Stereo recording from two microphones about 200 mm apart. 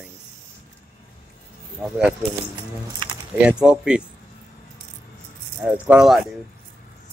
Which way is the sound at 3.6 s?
5° right (ahead or behind).